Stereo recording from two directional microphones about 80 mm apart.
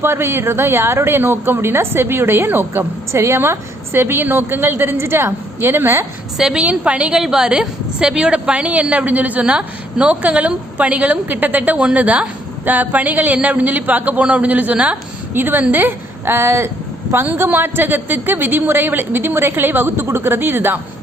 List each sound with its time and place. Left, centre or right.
0.0 s a woman's voice: right
6.3 s a woman's voice: centre
15.3 s a woman's voice: right